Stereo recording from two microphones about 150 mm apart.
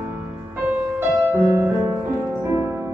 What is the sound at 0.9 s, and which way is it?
Music, 15° right (ahead or behind).